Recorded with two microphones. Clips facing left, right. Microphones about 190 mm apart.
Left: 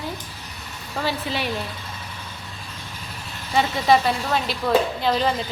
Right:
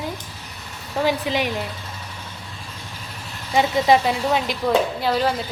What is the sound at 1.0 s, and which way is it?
Speech, 15° right (ahead or behind).